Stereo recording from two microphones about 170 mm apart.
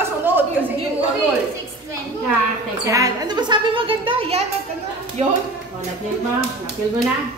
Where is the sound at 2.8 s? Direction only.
20° right (ahead or behind).